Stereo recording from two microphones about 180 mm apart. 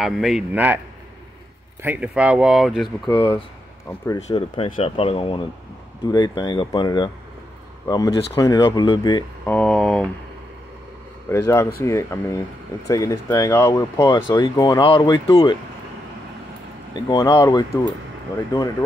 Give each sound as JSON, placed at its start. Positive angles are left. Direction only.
{"t": 0.0, "sound": "speech", "side_deg": 0}
{"t": 1.8, "sound": "speech", "side_deg": -10}
{"t": 3.1, "sound": "speech", "side_deg": 25}
{"t": 9.5, "sound": "a sound", "side_deg": 5}
{"t": 11.2, "sound": "speech", "side_deg": 15}
{"t": 16.9, "sound": "speech", "side_deg": 25}